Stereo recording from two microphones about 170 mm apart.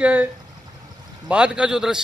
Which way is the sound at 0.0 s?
10° right (ahead or behind).